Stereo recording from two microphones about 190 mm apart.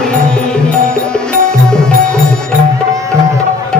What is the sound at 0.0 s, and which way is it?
Music, 5° left (ahead or behind).